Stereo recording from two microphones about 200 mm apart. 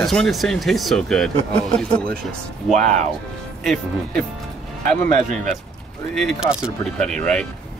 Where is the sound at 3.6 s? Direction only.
Centre (ahead or behind).